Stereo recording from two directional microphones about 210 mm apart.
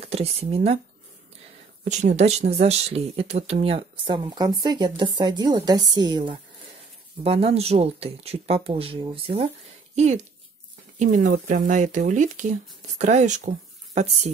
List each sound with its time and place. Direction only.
0.0 s speech: 30° right (ahead or behind)
2.1 s speech: 30° right (ahead or behind)